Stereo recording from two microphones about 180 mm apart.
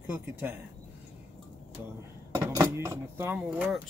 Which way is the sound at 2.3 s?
15° right (ahead or behind).